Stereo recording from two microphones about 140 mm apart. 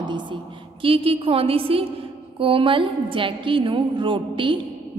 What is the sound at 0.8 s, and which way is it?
A woman's voice, 40° right (ahead or behind).